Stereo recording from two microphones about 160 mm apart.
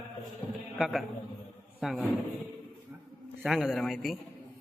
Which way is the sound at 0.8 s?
Centre (ahead or behind).